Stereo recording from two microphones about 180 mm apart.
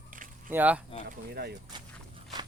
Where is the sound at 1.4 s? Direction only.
60° right (ahead or behind).